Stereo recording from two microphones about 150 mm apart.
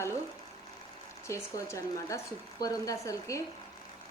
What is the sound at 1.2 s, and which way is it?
A woman's voice, 20° left (ahead or behind).